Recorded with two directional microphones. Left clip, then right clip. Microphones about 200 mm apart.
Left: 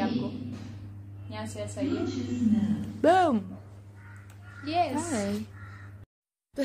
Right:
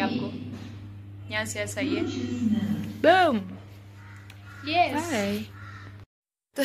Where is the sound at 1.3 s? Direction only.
10° right (ahead or behind).